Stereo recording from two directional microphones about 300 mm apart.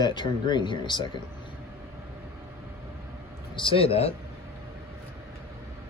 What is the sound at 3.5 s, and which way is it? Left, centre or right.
Speech, centre.